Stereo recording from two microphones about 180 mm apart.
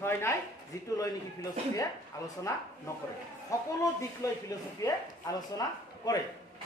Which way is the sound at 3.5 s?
15° left (ahead or behind).